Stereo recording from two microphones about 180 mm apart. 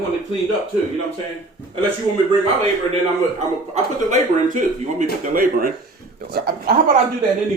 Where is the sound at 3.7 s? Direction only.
40° right (ahead or behind); by 6.8 s 55° right (ahead or behind).